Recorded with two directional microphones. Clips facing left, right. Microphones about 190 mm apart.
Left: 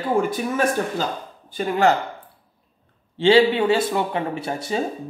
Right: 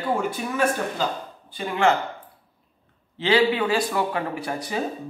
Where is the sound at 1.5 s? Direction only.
40° left (ahead or behind).